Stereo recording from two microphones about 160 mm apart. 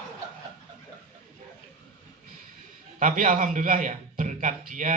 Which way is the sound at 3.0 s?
55° right (ahead or behind).